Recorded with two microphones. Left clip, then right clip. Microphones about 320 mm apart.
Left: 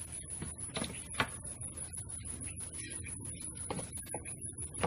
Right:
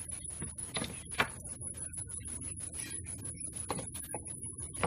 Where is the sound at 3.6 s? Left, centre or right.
Centre.